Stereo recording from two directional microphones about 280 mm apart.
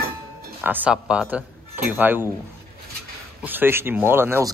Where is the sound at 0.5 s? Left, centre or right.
Centre.